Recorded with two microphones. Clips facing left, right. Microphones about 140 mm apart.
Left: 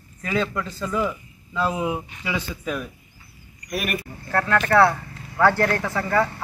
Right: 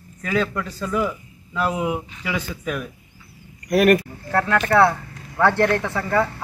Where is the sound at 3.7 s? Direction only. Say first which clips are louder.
Right 12 dB; 85° right.